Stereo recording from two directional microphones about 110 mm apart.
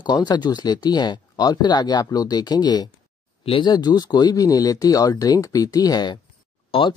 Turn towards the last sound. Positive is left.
turn(degrees=50)  # may be behind; listen again after turning